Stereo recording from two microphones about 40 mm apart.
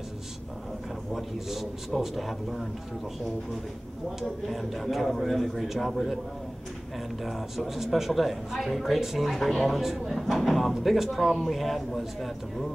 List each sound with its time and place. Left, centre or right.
1.1 s a man's voice: centre
4.2 s speech: centre
7.2 s speech: centre